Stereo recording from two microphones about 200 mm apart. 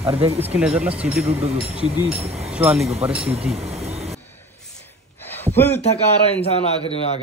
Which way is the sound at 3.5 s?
30° right (ahead or behind).